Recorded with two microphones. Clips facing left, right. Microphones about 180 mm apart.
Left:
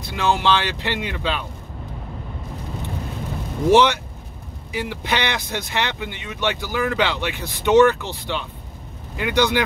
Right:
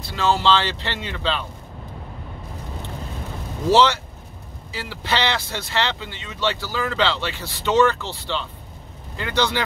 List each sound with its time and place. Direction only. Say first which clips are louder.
0.0 s speech: even; 15° left (ahead or behind)
3.6 s speech: left 2 dB; 15° left (ahead or behind)